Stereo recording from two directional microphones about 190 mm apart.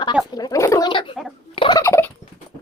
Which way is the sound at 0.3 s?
20° left (ahead or behind).